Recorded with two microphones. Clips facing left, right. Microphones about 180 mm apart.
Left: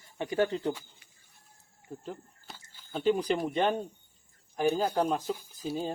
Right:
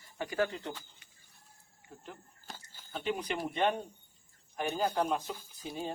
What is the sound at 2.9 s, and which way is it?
Speech, 35° left (ahead or behind).